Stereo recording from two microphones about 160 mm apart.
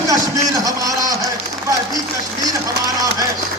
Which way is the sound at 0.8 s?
25° right (ahead or behind).